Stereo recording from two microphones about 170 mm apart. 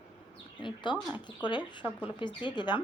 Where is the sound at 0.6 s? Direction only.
25° left (ahead or behind).